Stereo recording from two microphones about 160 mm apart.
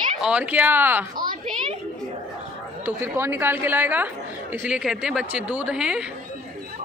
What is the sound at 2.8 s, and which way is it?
A woman's voice, 15° right (ahead or behind).